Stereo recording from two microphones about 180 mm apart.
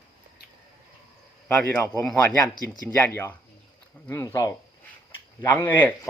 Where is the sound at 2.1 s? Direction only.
10° left (ahead or behind).